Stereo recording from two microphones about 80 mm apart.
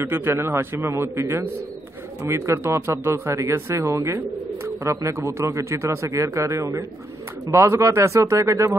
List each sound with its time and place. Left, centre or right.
0.0 s a man's voice: right